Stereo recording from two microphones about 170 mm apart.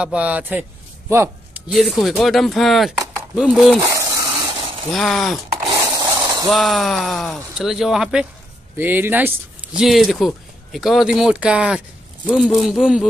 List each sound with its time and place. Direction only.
0.0 s a man's voice: 5° right (ahead or behind)
1.7 s speech: centre (ahead or behind)
3.9 s a sound: 20° right (ahead or behind)
4.9 s speech: centre (ahead or behind)
5.8 s a sound: 20° right (ahead or behind)
6.5 s speech: centre (ahead or behind)
9.8 s speech: centre (ahead or behind)